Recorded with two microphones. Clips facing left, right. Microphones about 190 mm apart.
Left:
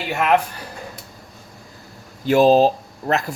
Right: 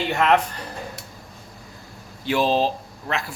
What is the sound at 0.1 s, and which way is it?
Speech, 10° left (ahead or behind).